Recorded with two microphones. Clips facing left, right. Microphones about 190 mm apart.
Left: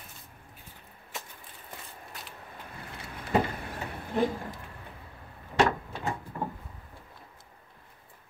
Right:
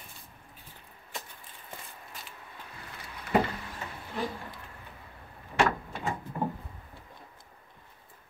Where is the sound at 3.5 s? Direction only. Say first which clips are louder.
Left 3 dB; 55° left (ahead or behind).